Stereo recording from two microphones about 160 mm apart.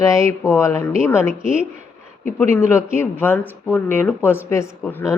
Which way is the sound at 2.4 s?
15° left (ahead or behind).